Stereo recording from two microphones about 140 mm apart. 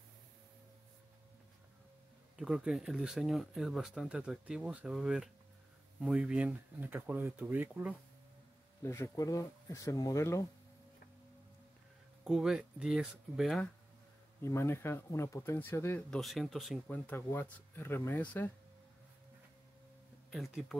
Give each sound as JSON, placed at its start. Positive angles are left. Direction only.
{"t": 2.3, "sound": "speech", "side_deg": -5}
{"t": 8.8, "sound": "speech", "side_deg": 20}
{"t": 12.3, "sound": "speech", "side_deg": -5}
{"t": 14.4, "sound": "speech", "side_deg": 20}
{"t": 16.1, "sound": "speech", "side_deg": 0}
{"t": 16.9, "sound": "speech", "side_deg": 15}